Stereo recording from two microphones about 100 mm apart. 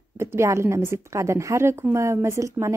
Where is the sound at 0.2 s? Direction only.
25° right (ahead or behind).